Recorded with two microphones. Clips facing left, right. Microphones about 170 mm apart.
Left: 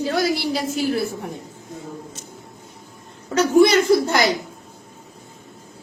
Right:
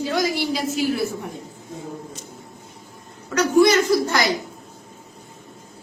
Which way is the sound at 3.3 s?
25° left (ahead or behind).